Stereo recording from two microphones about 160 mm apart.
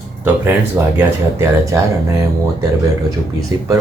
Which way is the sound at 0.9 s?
20° right (ahead or behind).